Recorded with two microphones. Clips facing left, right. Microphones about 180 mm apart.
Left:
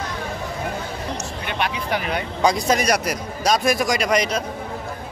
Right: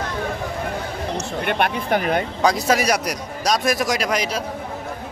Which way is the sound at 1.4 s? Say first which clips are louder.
Right 5 dB; 55° right (ahead or behind).